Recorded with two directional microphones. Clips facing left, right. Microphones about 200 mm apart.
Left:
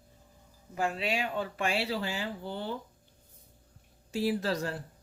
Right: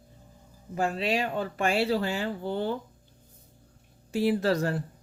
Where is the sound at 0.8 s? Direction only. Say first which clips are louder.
Right 4 dB; 40° right (ahead or behind); by 2.7 s 55° right (ahead or behind).